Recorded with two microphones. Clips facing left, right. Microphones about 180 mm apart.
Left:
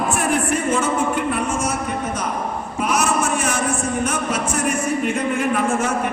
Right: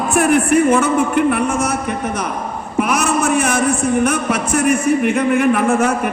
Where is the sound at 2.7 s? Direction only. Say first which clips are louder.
Right 4 dB; 65° right (ahead or behind).